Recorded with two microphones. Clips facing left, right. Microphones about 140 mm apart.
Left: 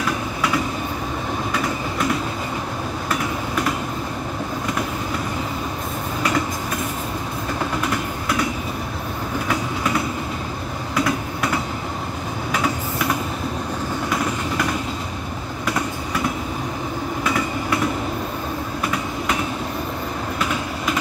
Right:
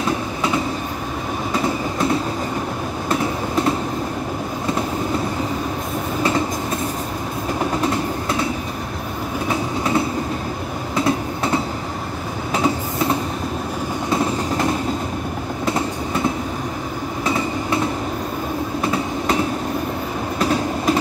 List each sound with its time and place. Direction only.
0.0 s train: 25° right (ahead or behind)
7.8 s train: 30° right (ahead or behind)
9.5 s train: 25° right (ahead or behind)
17.2 s train: 25° right (ahead or behind)
20.3 s train: 35° right (ahead or behind)